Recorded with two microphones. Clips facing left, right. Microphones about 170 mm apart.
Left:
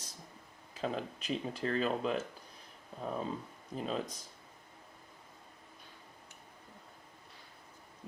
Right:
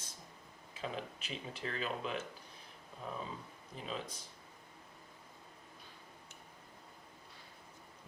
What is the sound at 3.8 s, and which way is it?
Speech, 40° left (ahead or behind).